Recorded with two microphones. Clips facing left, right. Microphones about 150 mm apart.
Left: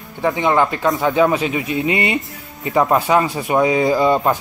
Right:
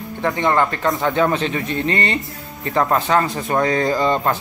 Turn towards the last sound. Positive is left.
turn(degrees=10)  # may be behind; listen again after turning